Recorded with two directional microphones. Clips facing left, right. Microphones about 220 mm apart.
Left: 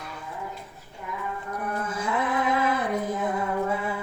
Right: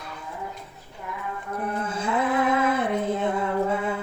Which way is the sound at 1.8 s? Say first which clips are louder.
Right 3 dB; 30° right (ahead or behind).